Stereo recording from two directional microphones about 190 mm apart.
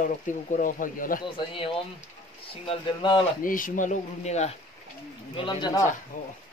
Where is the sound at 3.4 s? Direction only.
45° left (ahead or behind); by 5.9 s 20° left (ahead or behind).